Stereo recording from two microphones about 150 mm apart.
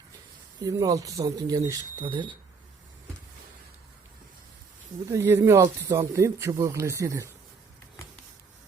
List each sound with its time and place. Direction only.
0.6 s speech: 25° right (ahead or behind)
5.1 s speech: 20° right (ahead or behind)